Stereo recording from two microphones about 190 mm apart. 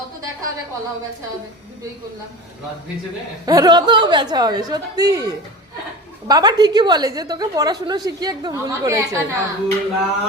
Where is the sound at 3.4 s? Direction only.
20° right (ahead or behind).